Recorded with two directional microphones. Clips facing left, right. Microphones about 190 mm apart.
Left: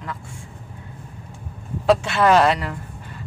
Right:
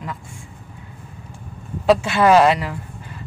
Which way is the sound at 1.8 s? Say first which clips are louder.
Right 2 dB; centre (ahead or behind).